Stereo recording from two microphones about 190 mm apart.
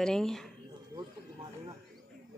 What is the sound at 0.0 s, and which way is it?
Speech, 5° left (ahead or behind).